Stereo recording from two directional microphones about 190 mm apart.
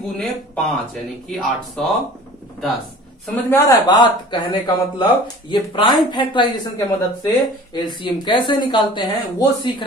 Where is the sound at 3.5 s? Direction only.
15° left (ahead or behind).